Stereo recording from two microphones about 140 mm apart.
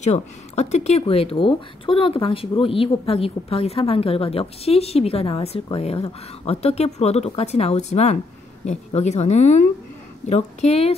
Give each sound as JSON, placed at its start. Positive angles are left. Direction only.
{"t": 0.0, "sound": "speech", "side_deg": 50}